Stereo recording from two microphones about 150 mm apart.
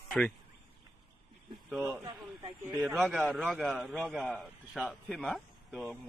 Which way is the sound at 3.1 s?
10° right (ahead or behind).